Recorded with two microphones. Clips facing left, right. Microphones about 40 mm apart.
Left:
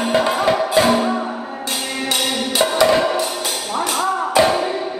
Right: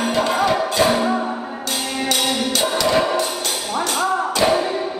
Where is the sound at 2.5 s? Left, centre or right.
Centre.